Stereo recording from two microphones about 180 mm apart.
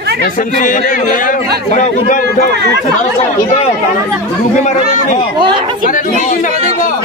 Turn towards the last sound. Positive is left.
turn(degrees=45)  # may be behind; listen again after turning